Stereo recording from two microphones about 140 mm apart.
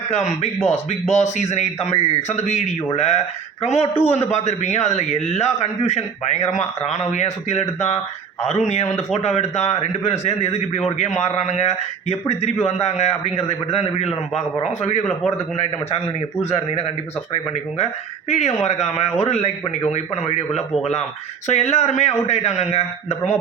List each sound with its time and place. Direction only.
0.4 s speech: 50° left (ahead or behind)
16.4 s speech: 45° left (ahead or behind)
18.3 s speech: 55° left (ahead or behind)
21.4 s speech: 50° left (ahead or behind)